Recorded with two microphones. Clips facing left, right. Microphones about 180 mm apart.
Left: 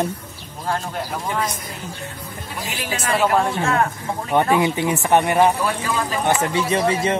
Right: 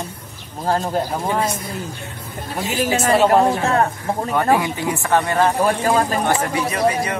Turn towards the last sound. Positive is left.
turn(degrees=25)  # may be behind; listen again after turning